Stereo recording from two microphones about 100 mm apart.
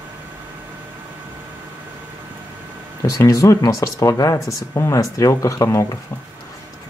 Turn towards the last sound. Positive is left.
turn(degrees=35)  # may be behind; listen again after turning